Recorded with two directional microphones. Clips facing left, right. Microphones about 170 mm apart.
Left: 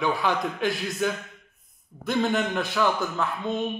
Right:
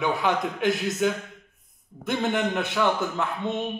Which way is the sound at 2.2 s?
25° right (ahead or behind).